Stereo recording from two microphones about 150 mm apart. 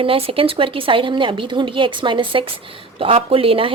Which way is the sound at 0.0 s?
40° right (ahead or behind).